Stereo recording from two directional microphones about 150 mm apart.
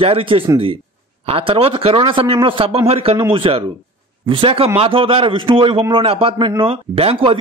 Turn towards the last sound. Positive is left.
turn(degrees=-40)  # may be behind; listen again after turning